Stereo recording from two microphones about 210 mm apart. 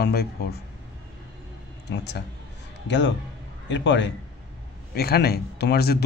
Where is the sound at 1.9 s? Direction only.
55° left (ahead or behind).